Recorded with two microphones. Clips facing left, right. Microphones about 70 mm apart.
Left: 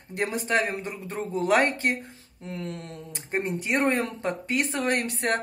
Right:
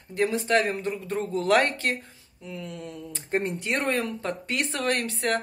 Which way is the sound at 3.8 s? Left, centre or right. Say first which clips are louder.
Left 3 dB; left.